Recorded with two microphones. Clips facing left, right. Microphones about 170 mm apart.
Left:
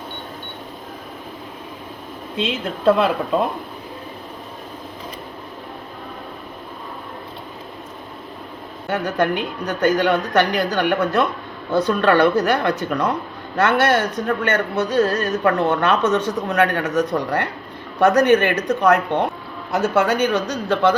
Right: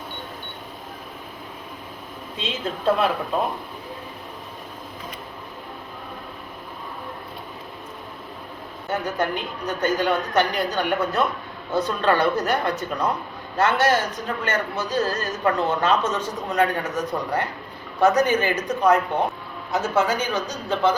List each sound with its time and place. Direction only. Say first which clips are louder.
2.4 s a woman's voice: left 6 dB; 65° left (ahead or behind)
8.9 s a woman's voice: left 4 dB; 70° left (ahead or behind)